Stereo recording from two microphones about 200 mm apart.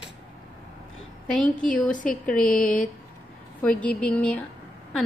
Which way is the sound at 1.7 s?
40° left (ahead or behind).